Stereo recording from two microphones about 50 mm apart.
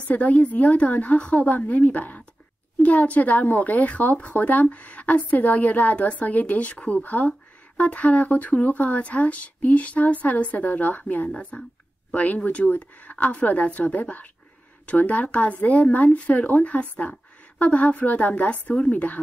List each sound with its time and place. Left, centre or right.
0.1 s a woman's voice: left